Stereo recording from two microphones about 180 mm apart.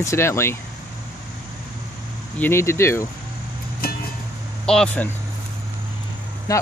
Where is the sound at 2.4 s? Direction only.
15° left (ahead or behind).